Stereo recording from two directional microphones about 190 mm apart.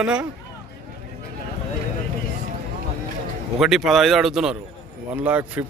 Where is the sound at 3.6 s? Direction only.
Centre (ahead or behind).